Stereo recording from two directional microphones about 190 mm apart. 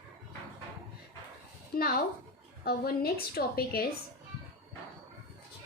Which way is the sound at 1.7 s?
50° left (ahead or behind).